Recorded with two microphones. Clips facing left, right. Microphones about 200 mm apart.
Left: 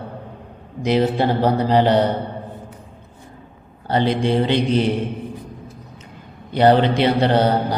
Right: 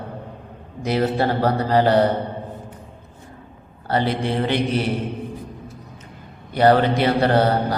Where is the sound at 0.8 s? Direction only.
15° left (ahead or behind).